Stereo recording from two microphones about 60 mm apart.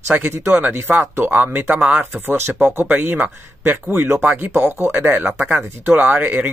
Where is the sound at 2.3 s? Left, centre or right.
Right.